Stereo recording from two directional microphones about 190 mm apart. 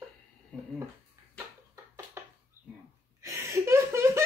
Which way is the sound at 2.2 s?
15° right (ahead or behind).